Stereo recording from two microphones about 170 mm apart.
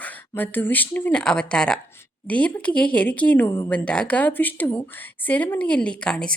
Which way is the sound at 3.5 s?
20° left (ahead or behind).